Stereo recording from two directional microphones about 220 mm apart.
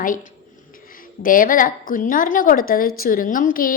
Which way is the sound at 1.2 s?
40° left (ahead or behind).